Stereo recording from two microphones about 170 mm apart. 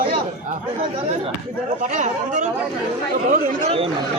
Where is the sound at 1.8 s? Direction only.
45° right (ahead or behind).